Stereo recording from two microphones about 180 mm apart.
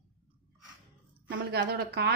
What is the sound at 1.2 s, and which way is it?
Speech, 70° right (ahead or behind).